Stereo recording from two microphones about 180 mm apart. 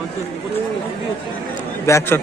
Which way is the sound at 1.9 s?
15° left (ahead or behind).